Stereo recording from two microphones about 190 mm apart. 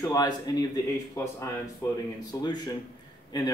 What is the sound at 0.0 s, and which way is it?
Speech, 20° left (ahead or behind).